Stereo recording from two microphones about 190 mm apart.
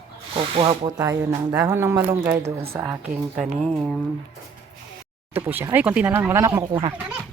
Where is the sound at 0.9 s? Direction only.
20° right (ahead or behind).